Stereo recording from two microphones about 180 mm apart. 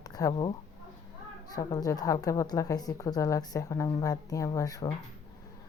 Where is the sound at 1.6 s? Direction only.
20° left (ahead or behind).